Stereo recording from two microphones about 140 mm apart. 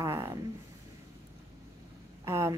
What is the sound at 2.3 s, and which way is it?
Speech, 20° right (ahead or behind).